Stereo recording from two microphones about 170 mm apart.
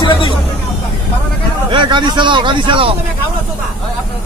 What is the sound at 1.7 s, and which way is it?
Speech, 30° right (ahead or behind).